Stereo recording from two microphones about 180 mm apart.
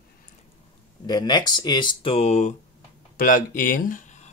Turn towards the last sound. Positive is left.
turn(degrees=45)  # may be behind; listen again after turning